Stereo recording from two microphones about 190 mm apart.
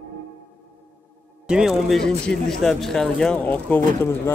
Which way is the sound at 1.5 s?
5° right (ahead or behind).